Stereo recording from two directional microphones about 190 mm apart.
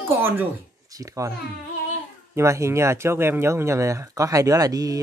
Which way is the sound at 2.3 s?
15° right (ahead or behind).